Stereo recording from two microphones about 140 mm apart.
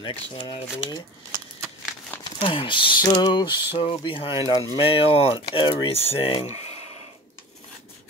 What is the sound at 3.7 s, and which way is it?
Speech, 45° left (ahead or behind).